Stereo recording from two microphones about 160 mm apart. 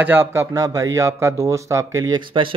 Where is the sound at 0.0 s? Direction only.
15° right (ahead or behind).